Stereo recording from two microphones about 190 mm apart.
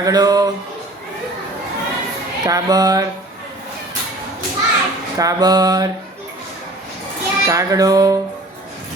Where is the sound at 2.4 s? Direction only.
20° right (ahead or behind).